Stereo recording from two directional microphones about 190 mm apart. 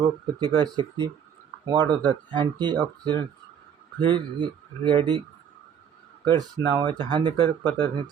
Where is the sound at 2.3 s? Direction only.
20° right (ahead or behind).